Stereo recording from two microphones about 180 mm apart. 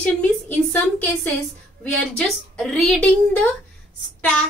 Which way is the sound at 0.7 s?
10° left (ahead or behind).